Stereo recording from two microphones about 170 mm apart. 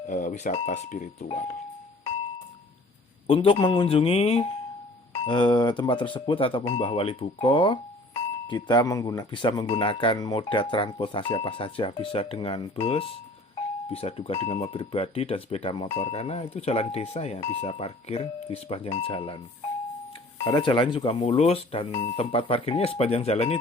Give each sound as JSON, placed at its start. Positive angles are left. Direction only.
{"t": 0.1, "sound": "speech", "side_deg": 50}
{"t": 3.2, "sound": "speech", "side_deg": 30}
{"t": 20.4, "sound": "speech", "side_deg": 30}